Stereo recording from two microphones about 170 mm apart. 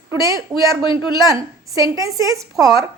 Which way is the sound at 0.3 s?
25° left (ahead or behind).